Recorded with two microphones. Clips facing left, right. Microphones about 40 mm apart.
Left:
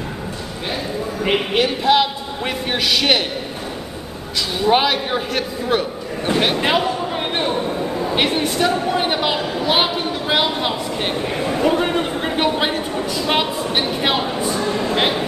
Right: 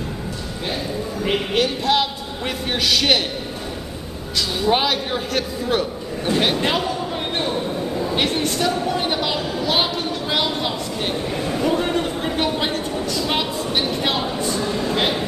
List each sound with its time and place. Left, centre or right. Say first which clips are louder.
1.2 s a man's voice: left 2 dB; centre
4.6 s a man's voice: left 4 dB; centre
7.3 s a sound: left 2 dB; centre